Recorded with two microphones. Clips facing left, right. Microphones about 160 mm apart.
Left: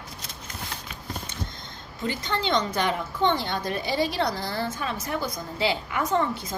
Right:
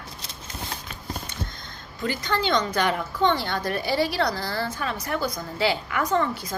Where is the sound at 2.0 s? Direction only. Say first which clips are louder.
Right 2 dB; 25° left (ahead or behind).